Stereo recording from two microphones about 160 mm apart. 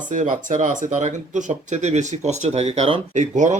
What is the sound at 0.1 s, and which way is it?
Speech, 55° right (ahead or behind).